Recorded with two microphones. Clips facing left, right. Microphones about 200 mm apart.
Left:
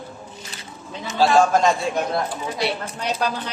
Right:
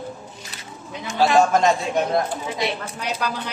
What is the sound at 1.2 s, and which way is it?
Speech, 20° right (ahead or behind).